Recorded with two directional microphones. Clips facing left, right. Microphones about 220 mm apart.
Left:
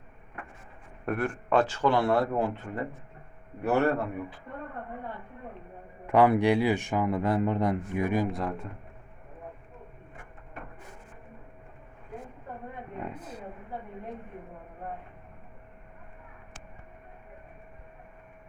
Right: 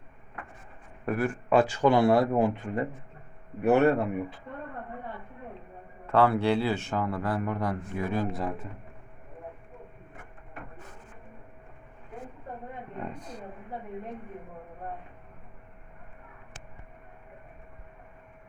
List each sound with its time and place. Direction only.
1.0 s a man's voice: 5° right (ahead or behind); by 4.0 s 20° right (ahead or behind)
6.1 s a man's voice: 15° left (ahead or behind)
8.3 s speech: centre (ahead or behind)
13.0 s a sound: 5° left (ahead or behind)